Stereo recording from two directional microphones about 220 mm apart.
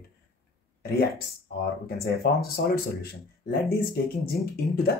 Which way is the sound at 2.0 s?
45° left (ahead or behind).